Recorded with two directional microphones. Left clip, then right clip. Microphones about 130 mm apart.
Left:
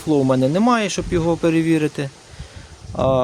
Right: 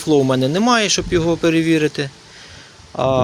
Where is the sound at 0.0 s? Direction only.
10° left (ahead or behind).